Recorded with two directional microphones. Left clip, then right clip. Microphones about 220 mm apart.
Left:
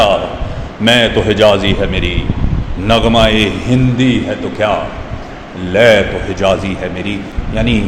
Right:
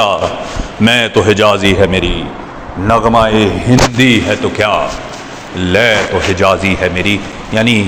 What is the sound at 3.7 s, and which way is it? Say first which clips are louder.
Speech: right 5 dB; 20° right (ahead or behind).